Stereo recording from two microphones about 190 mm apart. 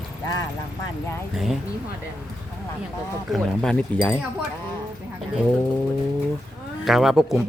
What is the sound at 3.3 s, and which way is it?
Speech, 5° left (ahead or behind).